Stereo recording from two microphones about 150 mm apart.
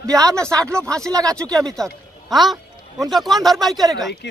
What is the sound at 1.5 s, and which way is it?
Speech, 5° left (ahead or behind).